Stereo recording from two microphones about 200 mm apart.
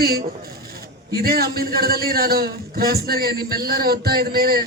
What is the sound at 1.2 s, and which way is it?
Speech, 50° right (ahead or behind).